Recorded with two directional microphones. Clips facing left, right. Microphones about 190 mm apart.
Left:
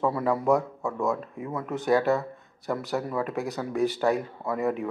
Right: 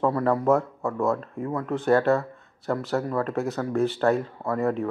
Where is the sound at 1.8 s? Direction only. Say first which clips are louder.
Right 2 dB; 15° left (ahead or behind).